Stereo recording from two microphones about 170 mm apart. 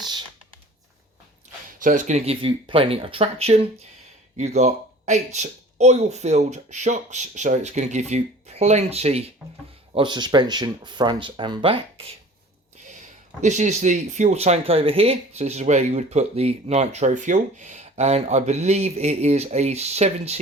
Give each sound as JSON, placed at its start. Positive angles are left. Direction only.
{"t": 0.0, "sound": "computer keyboard", "side_deg": -25}
{"t": 1.8, "sound": "speech", "side_deg": -50}
{"t": 9.9, "sound": "speech", "side_deg": -25}
{"t": 12.9, "sound": "speech", "side_deg": -45}